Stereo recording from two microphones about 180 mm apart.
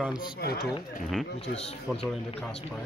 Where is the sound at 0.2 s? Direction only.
60° left (ahead or behind).